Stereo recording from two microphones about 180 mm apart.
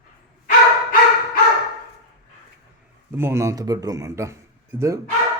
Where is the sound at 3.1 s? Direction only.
15° right (ahead or behind).